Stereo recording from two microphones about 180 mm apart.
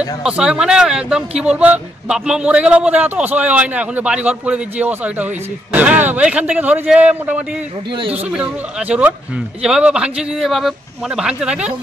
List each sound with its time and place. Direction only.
0.2 s a man's voice: 5° right (ahead or behind)